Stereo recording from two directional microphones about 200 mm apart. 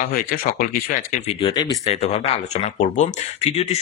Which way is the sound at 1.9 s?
30° left (ahead or behind).